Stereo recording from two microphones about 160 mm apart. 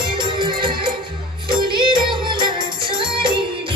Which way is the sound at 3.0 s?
30° right (ahead or behind).